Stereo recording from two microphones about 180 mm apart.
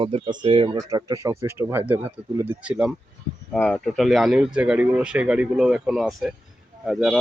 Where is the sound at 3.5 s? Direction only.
5° left (ahead or behind).